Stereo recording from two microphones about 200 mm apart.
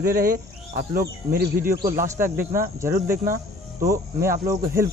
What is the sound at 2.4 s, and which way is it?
Speech, 45° right (ahead or behind).